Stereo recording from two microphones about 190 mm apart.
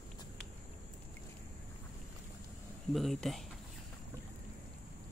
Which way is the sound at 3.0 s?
Centre (ahead or behind).